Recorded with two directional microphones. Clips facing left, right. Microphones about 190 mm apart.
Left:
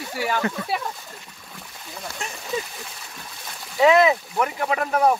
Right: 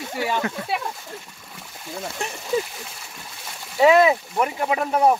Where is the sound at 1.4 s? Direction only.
Centre (ahead or behind).